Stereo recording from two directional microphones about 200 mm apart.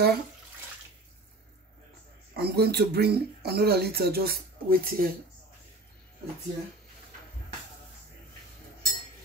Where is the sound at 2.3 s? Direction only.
50° right (ahead or behind).